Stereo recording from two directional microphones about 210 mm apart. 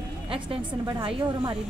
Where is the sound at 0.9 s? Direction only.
25° right (ahead or behind).